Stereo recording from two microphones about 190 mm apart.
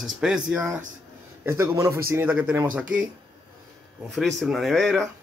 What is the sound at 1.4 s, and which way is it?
Speech, 15° right (ahead or behind).